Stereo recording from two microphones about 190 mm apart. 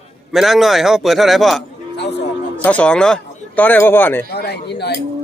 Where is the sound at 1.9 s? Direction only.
65° left (ahead or behind).